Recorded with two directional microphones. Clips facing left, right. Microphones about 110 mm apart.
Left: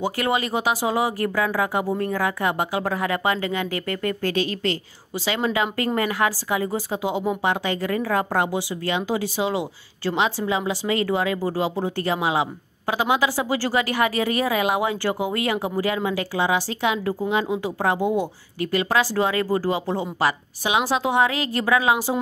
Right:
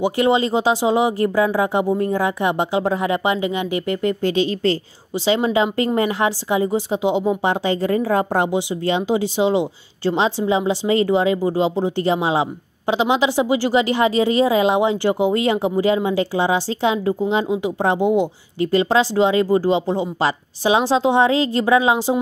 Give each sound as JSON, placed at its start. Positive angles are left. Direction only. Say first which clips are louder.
{"t": 0.0, "sound": "a woman's voice", "louder": "right 6 dB", "side_deg": -25}